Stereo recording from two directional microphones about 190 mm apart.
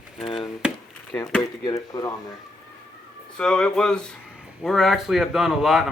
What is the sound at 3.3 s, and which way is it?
Speech, 5° left (ahead or behind).